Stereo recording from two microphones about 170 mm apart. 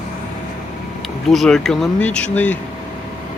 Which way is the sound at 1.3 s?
Centre (ahead or behind).